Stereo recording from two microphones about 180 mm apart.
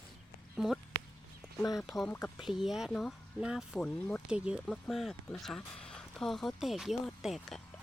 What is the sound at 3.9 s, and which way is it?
Speech, 5° left (ahead or behind).